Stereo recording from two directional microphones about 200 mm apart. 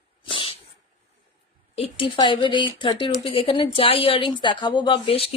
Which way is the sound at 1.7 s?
25° left (ahead or behind).